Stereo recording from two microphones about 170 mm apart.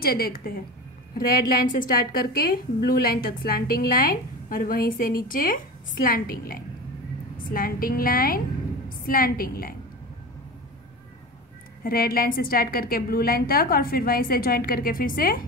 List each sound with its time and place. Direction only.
0.0 s a woman's voice: 60° left (ahead or behind)
11.8 s a woman's voice: 60° left (ahead or behind)